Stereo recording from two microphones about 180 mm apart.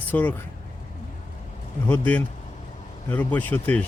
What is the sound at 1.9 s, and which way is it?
A man's voice, 10° left (ahead or behind).